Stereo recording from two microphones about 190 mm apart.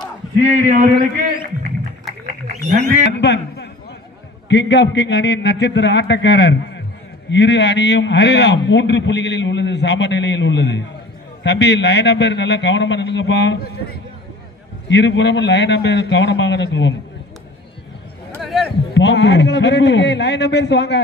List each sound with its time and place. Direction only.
0.4 s a man's voice: 35° right (ahead or behind)
3.1 s a man's voice: 60° left (ahead or behind)
18.4 s a sound: centre (ahead or behind)
18.9 s a man's voice: 65° left (ahead or behind)